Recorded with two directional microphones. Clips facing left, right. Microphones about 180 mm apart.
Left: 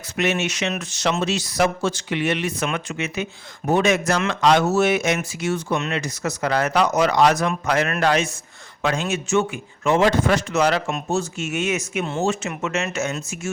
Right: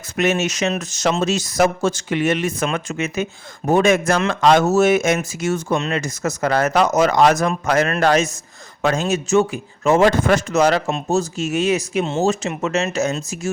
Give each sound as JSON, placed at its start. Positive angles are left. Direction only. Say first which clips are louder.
{"t": 0.2, "sound": "speech", "louder": "right 4 dB", "side_deg": -45}